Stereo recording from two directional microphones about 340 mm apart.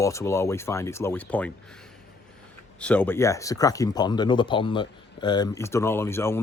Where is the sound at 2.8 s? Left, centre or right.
Centre.